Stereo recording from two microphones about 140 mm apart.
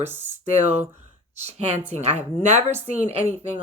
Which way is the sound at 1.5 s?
50° right (ahead or behind).